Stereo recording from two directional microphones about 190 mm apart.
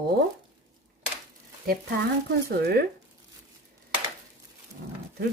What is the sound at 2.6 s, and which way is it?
Speech, 55° right (ahead or behind).